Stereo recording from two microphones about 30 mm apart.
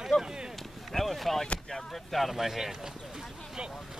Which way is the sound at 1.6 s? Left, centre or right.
Centre.